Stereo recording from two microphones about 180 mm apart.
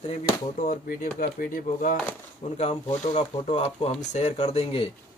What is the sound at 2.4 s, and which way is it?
Speech, 35° left (ahead or behind).